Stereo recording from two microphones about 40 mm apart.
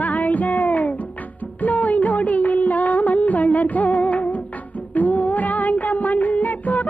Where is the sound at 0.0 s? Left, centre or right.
Left.